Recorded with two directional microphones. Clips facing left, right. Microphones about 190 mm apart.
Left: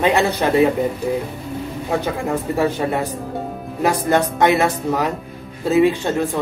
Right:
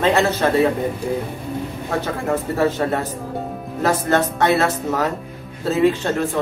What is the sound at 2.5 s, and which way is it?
A woman's voice, 15° left (ahead or behind).